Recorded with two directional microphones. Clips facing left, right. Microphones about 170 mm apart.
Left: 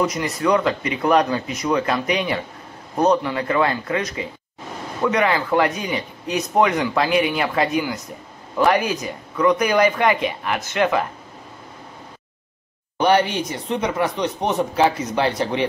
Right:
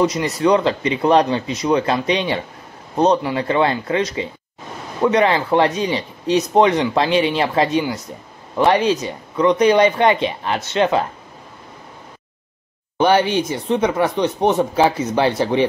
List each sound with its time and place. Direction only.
0.0 s speech: 25° right (ahead or behind)
12.9 s speech: 30° right (ahead or behind)